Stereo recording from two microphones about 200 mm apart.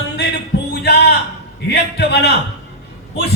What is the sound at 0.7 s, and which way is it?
Music, 55° left (ahead or behind).